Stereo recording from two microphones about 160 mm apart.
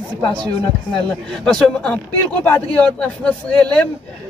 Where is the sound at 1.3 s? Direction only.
5° left (ahead or behind).